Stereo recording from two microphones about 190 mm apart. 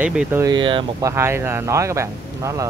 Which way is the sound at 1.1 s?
15° right (ahead or behind).